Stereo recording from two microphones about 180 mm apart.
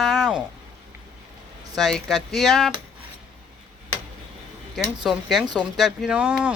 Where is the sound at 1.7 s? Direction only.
Centre (ahead or behind).